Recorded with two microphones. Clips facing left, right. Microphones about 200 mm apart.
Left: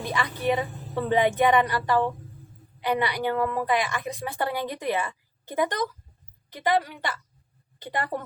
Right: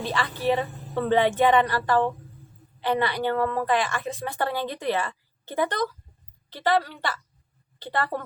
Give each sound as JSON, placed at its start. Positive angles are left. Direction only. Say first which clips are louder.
{"t": 0.0, "sound": "a woman's voice", "louder": "right 1 dB", "side_deg": 15}